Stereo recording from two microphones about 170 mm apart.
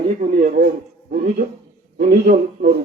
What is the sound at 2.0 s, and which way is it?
Speech, 65° right (ahead or behind).